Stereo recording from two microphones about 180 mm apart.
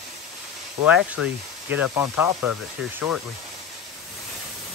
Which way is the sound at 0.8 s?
5° right (ahead or behind).